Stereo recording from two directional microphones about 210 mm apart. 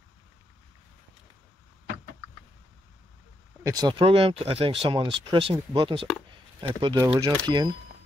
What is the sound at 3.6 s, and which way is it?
Speech, 20° right (ahead or behind).